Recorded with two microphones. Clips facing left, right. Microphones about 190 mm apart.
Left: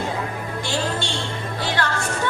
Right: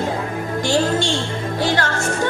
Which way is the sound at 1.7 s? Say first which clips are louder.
Right 3 dB; 45° right (ahead or behind).